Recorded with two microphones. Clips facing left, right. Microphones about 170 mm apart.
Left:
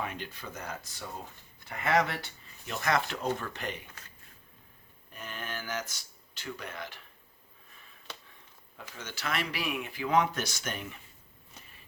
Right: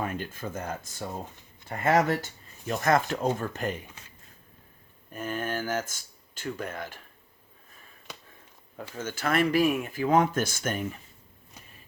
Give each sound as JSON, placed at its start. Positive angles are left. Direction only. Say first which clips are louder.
{"t": 0.0, "sound": "speech", "louder": "right 5 dB", "side_deg": -45}
{"t": 5.1, "sound": "speech", "louder": "right 9 dB", "side_deg": -45}
{"t": 9.0, "sound": "speech", "louder": "right 9 dB", "side_deg": -50}